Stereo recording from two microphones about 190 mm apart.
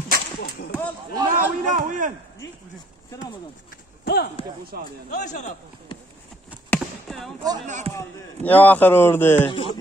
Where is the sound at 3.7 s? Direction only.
55° left (ahead or behind).